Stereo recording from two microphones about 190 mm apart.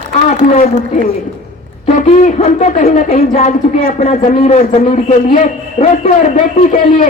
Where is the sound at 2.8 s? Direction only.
50° left (ahead or behind).